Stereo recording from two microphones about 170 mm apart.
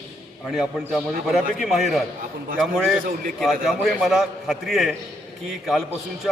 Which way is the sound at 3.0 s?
55° right (ahead or behind).